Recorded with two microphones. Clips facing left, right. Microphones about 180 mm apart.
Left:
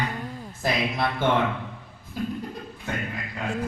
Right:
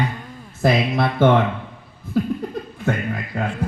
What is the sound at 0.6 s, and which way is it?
Speech, 55° right (ahead or behind).